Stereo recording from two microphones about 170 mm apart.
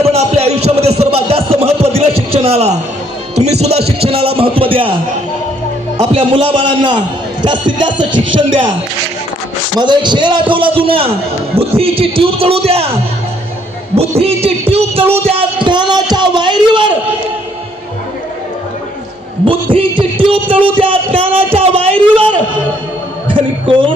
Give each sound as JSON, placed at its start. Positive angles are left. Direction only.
{"t": 0.0, "sound": "music", "side_deg": -35}
{"t": 3.6, "sound": "a man's voice", "side_deg": -35}
{"t": 6.0, "sound": "music", "side_deg": -30}
{"t": 9.8, "sound": "music", "side_deg": -25}
{"t": 11.5, "sound": "a man's voice", "side_deg": -35}
{"t": 13.9, "sound": "a man's voice", "side_deg": -35}
{"t": 14.7, "sound": "music", "side_deg": -35}
{"t": 19.7, "sound": "music", "side_deg": -30}
{"t": 20.7, "sound": "a man's voice", "side_deg": -30}